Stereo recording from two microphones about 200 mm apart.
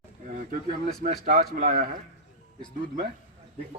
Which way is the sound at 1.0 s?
50° right (ahead or behind).